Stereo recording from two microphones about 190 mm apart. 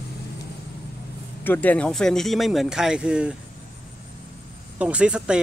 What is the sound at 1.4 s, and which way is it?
Speech, 10° left (ahead or behind).